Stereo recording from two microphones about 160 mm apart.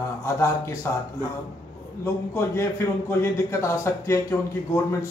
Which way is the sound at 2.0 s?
15° left (ahead or behind).